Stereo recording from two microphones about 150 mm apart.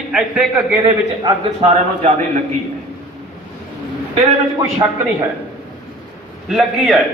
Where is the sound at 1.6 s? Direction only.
55° right (ahead or behind).